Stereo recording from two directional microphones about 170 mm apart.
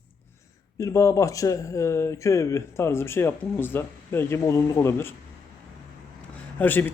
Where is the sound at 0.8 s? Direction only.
20° left (ahead or behind).